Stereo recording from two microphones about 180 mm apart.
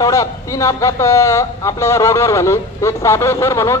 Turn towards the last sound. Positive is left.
turn(degrees=15)  # may be behind; listen again after turning